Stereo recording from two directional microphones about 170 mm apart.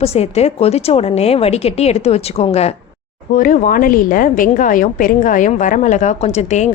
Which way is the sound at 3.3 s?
55° left (ahead or behind).